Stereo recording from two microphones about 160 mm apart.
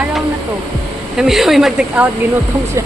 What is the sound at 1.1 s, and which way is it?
Speech, centre (ahead or behind).